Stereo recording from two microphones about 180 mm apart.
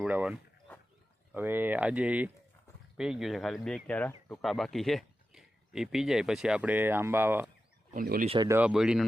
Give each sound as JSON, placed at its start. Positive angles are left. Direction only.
{"t": 0.0, "sound": "speech", "side_deg": -5}
{"t": 7.9, "sound": "speech", "side_deg": -50}
{"t": 8.4, "sound": "speech", "side_deg": -10}